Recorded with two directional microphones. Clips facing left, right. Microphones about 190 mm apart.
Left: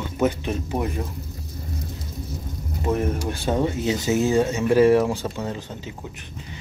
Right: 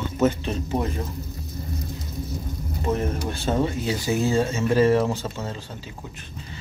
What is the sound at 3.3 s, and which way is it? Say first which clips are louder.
Speech: even; 15° left (ahead or behind).